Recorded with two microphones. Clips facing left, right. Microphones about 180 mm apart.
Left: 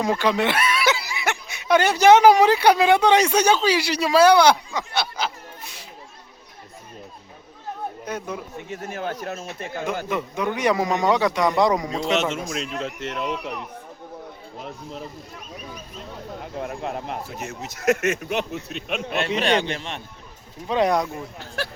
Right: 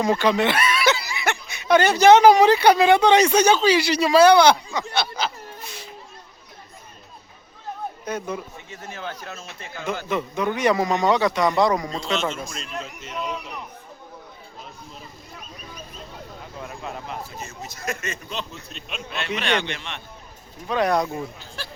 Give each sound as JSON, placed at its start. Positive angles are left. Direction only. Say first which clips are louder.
{"t": 0.0, "sound": "speech", "louder": "right 1 dB", "side_deg": 5}
{"t": 8.0, "sound": "speech", "louder": "right 3 dB", "side_deg": 10}
{"t": 8.7, "sound": "speech", "louder": "left 5 dB", "side_deg": 45}
{"t": 10.1, "sound": "speech", "louder": "right 1 dB", "side_deg": 10}
{"t": 12.3, "sound": "speech", "louder": "left 4 dB", "side_deg": 75}
{"t": 16.4, "sound": "speech", "louder": "left 6 dB", "side_deg": 55}
{"t": 19.3, "sound": "speech", "louder": "left 2 dB", "side_deg": 35}
{"t": 20.7, "sound": "speech", "louder": "left 2 dB", "side_deg": 25}
{"t": 21.3, "sound": "speech", "louder": "left 7 dB", "side_deg": 65}